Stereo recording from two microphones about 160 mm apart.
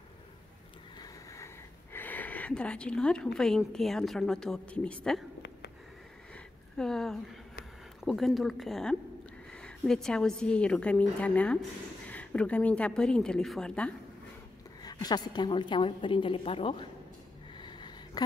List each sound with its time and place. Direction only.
0.9 s speech: 20° left (ahead or behind)
6.8 s a woman's voice: 5° left (ahead or behind)
14.8 s a woman's voice: 25° left (ahead or behind)
17.6 s a sound: 30° left (ahead or behind)